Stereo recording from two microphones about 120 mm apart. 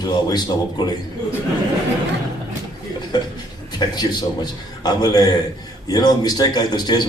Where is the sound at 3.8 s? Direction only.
35° left (ahead or behind).